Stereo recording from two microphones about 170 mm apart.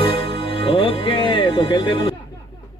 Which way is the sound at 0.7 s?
30° left (ahead or behind).